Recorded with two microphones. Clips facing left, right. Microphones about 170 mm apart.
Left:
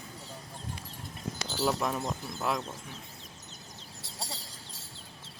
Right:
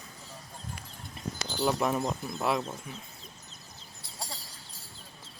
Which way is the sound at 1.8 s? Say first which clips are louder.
Right 3 dB; 5° right (ahead or behind).